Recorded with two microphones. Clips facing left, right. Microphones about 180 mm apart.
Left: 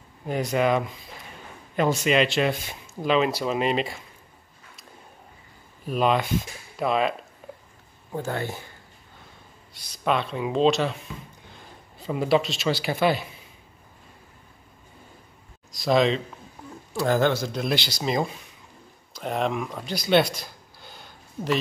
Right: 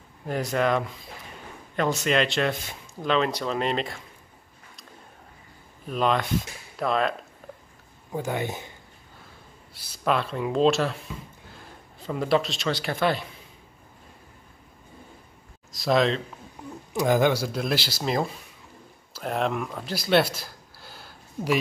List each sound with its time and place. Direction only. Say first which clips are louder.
0.3 s speech: left 2 dB; centre (ahead or behind)
2.0 s speech: left 2 dB; centre (ahead or behind)
5.9 s speech: left 2 dB; 5° left (ahead or behind)
8.2 s speech: right 1 dB; 15° right (ahead or behind)
9.8 s speech: even; centre (ahead or behind)
15.7 s speech: left 1 dB; centre (ahead or behind)
16.9 s speech: right 1 dB; 15° right (ahead or behind)